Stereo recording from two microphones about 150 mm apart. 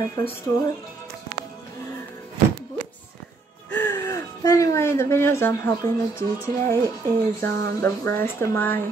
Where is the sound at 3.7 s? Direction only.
15° left (ahead or behind).